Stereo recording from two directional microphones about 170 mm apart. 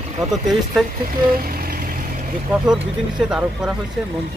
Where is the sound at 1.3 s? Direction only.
60° right (ahead or behind).